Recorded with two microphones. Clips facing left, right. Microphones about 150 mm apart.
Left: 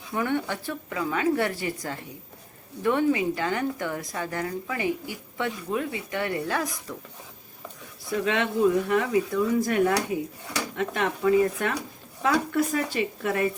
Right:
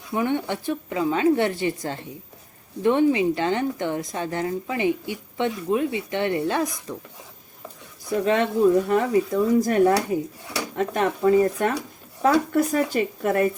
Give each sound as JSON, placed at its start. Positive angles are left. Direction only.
{"t": 0.1, "sound": "a woman's voice", "side_deg": -20}
{"t": 8.1, "sound": "speech", "side_deg": -35}